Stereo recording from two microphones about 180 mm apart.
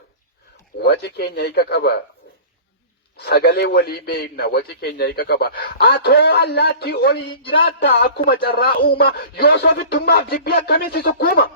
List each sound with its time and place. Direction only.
0.8 s a man's voice: 65° left (ahead or behind)
3.2 s a man's voice: 65° left (ahead or behind)